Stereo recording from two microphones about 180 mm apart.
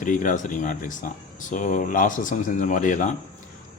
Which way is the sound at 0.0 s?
45° left (ahead or behind).